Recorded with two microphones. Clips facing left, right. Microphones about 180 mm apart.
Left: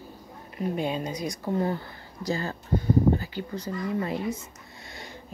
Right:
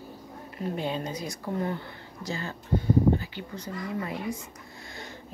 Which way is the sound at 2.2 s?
40° left (ahead or behind).